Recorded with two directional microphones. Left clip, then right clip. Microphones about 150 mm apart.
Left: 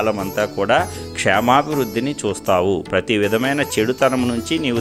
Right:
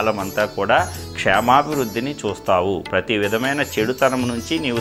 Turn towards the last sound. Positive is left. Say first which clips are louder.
# left 2 dB
turn(degrees=50)  # may be behind; listen again after turning